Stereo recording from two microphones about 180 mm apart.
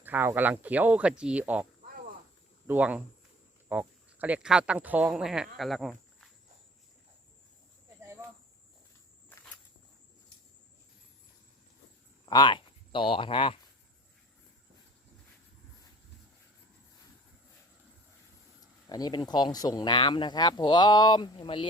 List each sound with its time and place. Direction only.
0.0 s speech: 10° right (ahead or behind)
2.6 s speech: 10° right (ahead or behind)
9.3 s walk: 5° left (ahead or behind)
12.2 s speech: 25° left (ahead or behind)
18.9 s speech: 20° left (ahead or behind)